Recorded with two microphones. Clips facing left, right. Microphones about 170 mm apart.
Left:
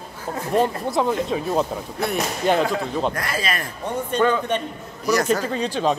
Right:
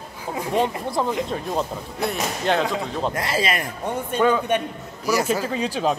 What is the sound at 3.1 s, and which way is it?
Speech, 25° right (ahead or behind).